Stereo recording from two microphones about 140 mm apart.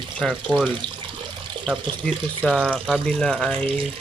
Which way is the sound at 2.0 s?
5° left (ahead or behind).